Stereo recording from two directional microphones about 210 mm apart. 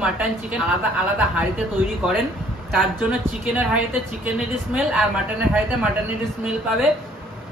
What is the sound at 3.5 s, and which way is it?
A woman's voice, 5° right (ahead or behind).